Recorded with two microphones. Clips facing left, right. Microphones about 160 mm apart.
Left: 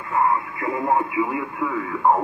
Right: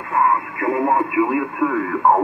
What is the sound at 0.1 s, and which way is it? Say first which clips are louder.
Speech: right 2 dB; 55° right (ahead or behind).